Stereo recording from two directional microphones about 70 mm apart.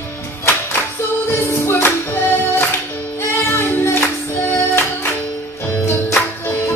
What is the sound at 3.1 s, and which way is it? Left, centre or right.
Music, left.